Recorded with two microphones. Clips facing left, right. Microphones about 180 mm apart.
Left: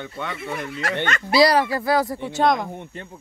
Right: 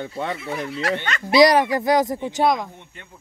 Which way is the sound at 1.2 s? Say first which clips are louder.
Right 3 dB; 20° right (ahead or behind).